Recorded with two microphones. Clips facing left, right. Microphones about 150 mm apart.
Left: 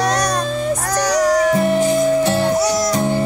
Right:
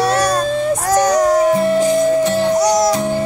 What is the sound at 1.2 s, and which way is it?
Music, 25° right (ahead or behind).